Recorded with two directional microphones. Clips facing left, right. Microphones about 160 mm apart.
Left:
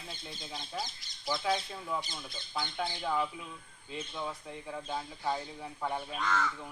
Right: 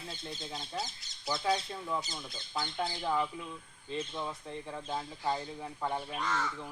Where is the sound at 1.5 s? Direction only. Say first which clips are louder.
Even; 5° left (ahead or behind).